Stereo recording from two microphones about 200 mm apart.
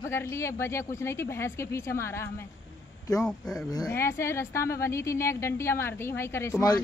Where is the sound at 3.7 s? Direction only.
15° left (ahead or behind).